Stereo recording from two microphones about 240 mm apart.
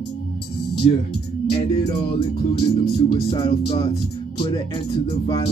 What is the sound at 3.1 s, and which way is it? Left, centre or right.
A man's voice, centre.